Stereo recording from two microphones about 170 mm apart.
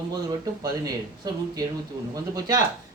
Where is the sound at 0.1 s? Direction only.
20° right (ahead or behind).